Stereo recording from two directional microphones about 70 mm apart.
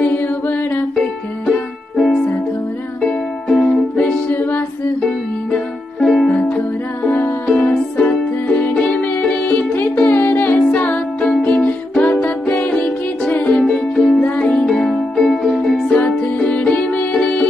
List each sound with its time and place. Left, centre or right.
0.0 s mantra: left
2.0 s music: centre
4.3 s music: left
5.9 s music: centre
7.1 s music: left; by 14.2 s centre
14.2 s music: centre
15.2 s music: centre
15.9 s music: centre